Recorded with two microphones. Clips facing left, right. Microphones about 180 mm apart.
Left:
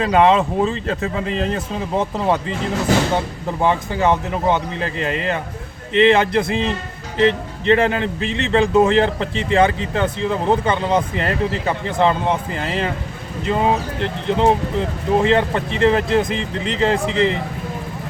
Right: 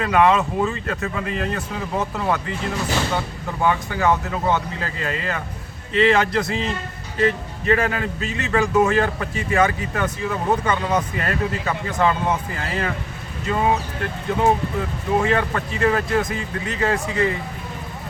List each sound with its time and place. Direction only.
0.0 s speech: 25° left (ahead or behind)
3.6 s speech: 25° left (ahead or behind)